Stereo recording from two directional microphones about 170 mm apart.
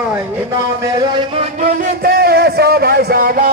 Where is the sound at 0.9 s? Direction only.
25° right (ahead or behind).